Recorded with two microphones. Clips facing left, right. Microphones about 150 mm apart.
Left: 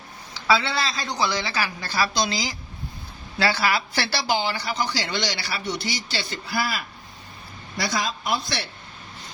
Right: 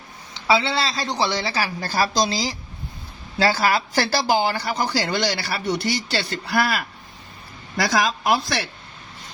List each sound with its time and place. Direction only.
0.3 s a woman's voice: 25° right (ahead or behind); by 6.8 s 70° right (ahead or behind)
7.8 s a woman's voice: 80° right